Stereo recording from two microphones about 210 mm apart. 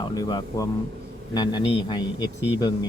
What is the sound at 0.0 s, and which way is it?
A man's voice, 20° left (ahead or behind).